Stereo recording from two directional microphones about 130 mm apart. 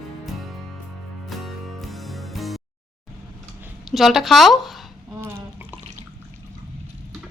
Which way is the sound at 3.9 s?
Centre (ahead or behind).